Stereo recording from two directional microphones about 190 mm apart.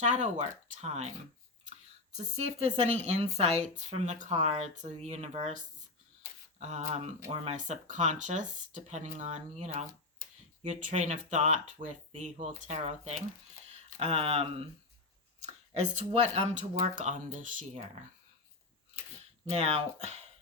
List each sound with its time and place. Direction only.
0.0 s speech: 40° right (ahead or behind)
2.1 s speech: 35° right (ahead or behind)
15.8 s speech: 35° right (ahead or behind)
19.6 s speech: 35° right (ahead or behind)